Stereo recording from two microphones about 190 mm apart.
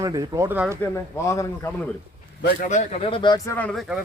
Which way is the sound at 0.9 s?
15° left (ahead or behind).